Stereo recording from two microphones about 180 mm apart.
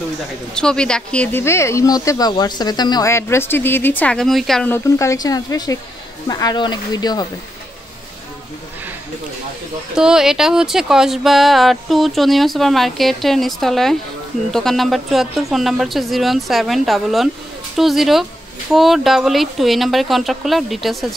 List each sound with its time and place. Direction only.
0.6 s speech: 5° left (ahead or behind)
4.7 s speech: 15° left (ahead or behind)
9.9 s speech: 5° right (ahead or behind)